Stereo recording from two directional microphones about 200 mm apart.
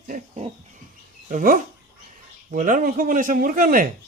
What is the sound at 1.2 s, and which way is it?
Speech, 40° right (ahead or behind).